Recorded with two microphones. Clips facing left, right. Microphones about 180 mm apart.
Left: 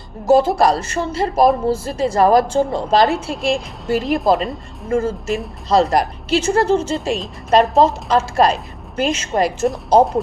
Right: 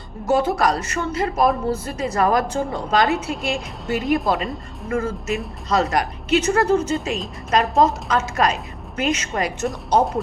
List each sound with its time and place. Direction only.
0.3 s a woman's voice: 30° left (ahead or behind)
3.5 s speech: centre (ahead or behind)
4.9 s a woman's voice: 30° left (ahead or behind)